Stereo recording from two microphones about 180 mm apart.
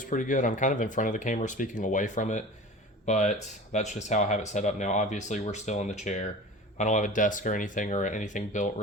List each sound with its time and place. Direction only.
0.0 s speech: 45° left (ahead or behind)